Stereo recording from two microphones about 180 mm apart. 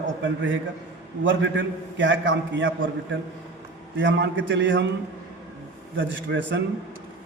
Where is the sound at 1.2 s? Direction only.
90° right.